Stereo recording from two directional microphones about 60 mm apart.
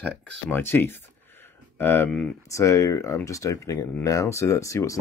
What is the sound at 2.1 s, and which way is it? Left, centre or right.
Speech, centre.